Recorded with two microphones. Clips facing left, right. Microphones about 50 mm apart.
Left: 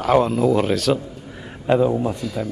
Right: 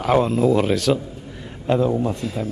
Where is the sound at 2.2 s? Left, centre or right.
Right.